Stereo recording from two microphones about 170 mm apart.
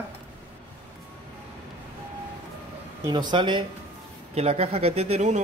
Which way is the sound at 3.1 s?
25° right (ahead or behind).